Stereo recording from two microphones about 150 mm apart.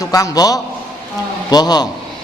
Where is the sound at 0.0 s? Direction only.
25° left (ahead or behind).